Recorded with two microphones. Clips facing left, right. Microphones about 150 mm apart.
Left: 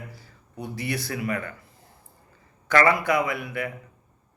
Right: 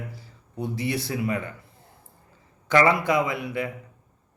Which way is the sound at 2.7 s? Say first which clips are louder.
Right 1 dB; 20° right (ahead or behind).